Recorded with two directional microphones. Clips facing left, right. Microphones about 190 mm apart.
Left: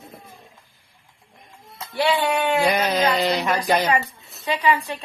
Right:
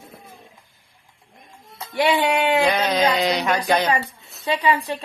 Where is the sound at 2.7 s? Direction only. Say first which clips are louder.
Right 1 dB; 10° left (ahead or behind).